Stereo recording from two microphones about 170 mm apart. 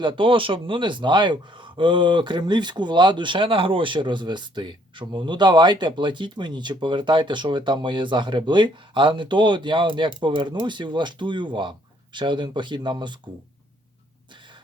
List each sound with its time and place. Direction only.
0.0 s a man's voice: 30° right (ahead or behind)